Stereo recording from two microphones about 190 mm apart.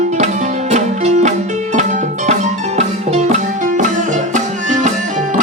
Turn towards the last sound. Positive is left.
turn(degrees=-40)  # may be behind; listen again after turning